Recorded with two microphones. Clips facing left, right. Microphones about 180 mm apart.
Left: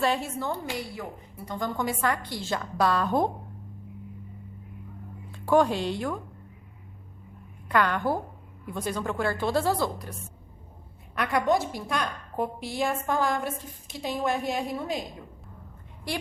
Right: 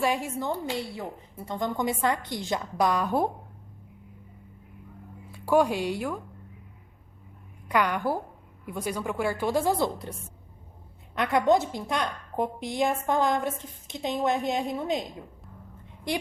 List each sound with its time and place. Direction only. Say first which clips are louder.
0.0 s a woman's voice: even; 10° right (ahead or behind)
5.3 s speech: left 1 dB; 10° right (ahead or behind)
7.7 s a woman's voice: left 1 dB; 15° right (ahead or behind)
16.1 s a woman's voice: right 3 dB; 20° right (ahead or behind)